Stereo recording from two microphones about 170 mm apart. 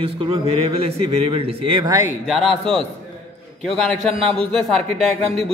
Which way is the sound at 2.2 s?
Centre (ahead or behind).